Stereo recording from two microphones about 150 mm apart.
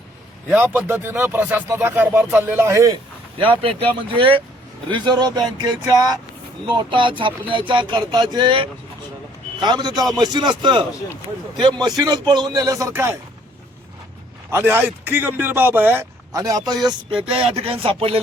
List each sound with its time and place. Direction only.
0.5 s speech: 15° right (ahead or behind)
3.3 s speech: 35° right (ahead or behind); by 13.1 s 15° right (ahead or behind)
14.5 s speech: 15° right (ahead or behind)
16.8 s speech: 35° right (ahead or behind)